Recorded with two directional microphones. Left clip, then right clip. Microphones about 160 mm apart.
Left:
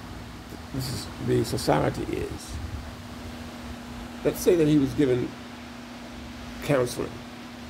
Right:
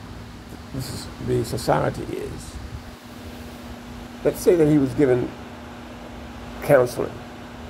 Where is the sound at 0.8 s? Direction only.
15° left (ahead or behind).